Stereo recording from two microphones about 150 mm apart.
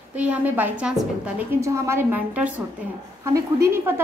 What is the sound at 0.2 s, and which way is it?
A woman's voice, 10° right (ahead or behind).